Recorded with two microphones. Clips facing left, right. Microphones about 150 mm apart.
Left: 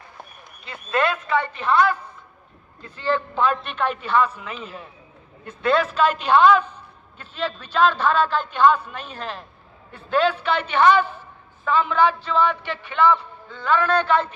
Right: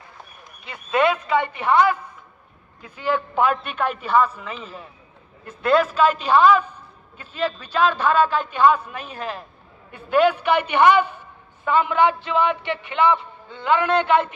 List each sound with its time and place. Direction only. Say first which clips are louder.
0.7 s a woman's voice: right 3 dB; 15° right (ahead or behind)